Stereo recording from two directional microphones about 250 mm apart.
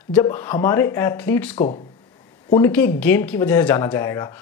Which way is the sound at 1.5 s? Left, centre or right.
Left.